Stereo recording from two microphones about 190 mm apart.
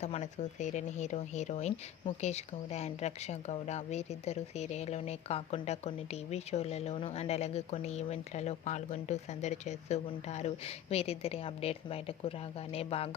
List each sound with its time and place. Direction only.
0.0 s speech: 35° left (ahead or behind)